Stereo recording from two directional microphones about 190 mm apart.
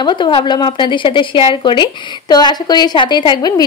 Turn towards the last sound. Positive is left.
turn(degrees=25)  # may be behind; listen again after turning